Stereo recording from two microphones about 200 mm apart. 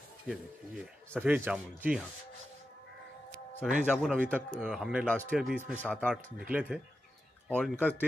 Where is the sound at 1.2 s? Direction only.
10° right (ahead or behind).